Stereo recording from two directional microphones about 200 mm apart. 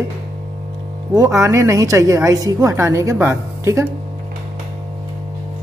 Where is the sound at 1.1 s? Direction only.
15° right (ahead or behind).